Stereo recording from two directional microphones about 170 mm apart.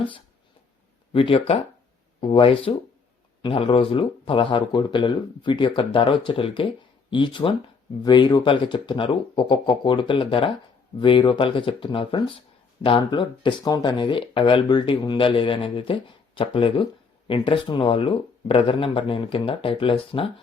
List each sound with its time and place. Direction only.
1.1 s speech: 30° left (ahead or behind)